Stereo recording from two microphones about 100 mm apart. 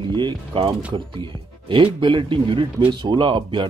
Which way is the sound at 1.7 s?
55° right (ahead or behind).